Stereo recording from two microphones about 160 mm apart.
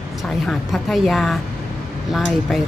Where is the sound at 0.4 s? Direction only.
Centre (ahead or behind).